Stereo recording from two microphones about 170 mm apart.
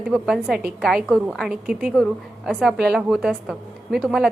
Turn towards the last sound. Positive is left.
turn(degrees=-5)  # may be behind; listen again after turning